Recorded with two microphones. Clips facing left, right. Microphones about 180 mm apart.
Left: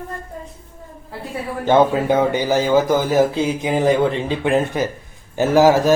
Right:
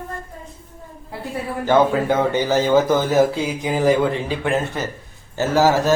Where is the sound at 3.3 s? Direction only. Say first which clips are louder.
Left 3 dB; 20° left (ahead or behind).